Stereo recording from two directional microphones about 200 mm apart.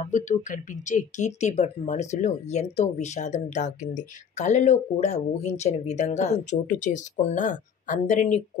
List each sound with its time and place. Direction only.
0.0 s speech: 40° left (ahead or behind)